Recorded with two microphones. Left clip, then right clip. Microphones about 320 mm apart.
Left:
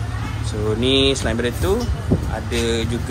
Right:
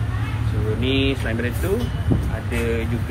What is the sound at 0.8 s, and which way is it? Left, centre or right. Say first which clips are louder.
Speech: left 5 dB; centre.